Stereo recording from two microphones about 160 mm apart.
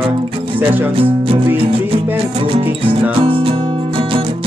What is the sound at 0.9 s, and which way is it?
Music, 35° right (ahead or behind).